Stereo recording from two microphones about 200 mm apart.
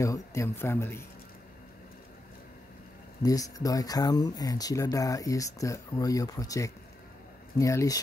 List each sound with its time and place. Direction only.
0.0 s speech: 15° left (ahead or behind)
3.2 s speech: 15° left (ahead or behind)